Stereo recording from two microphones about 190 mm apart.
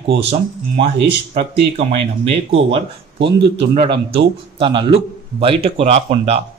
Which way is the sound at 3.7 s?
30° right (ahead or behind).